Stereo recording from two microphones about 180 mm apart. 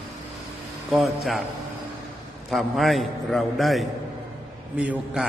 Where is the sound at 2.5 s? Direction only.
Centre (ahead or behind).